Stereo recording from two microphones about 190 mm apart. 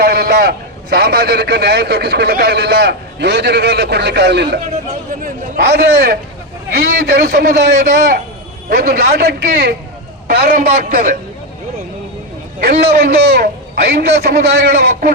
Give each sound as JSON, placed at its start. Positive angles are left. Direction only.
{"t": 0.0, "sound": "a man's voice", "side_deg": -55}
{"t": 12.5, "sound": "a man's voice", "side_deg": -55}